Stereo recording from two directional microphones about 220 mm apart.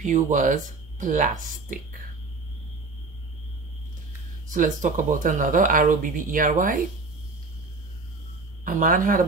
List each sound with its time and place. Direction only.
0.0 s speech: 35° right (ahead or behind)
4.5 s speech: 35° right (ahead or behind)
8.6 s speech: 35° right (ahead or behind)